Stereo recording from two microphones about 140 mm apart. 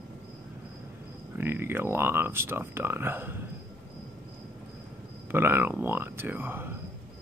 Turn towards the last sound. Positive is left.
turn(degrees=-15)  # may be behind; listen again after turning